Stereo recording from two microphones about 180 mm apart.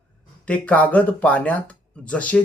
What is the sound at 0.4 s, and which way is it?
Speech, 5° left (ahead or behind).